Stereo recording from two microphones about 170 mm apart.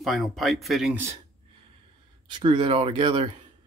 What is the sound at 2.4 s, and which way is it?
Speech, 30° right (ahead or behind).